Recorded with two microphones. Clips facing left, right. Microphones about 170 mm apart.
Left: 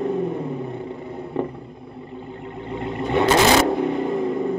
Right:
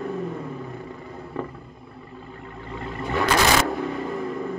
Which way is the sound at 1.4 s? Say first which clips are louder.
Left 6 dB; 20° left (ahead or behind).